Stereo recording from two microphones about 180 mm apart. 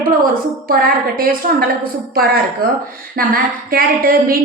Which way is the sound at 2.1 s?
55° right (ahead or behind).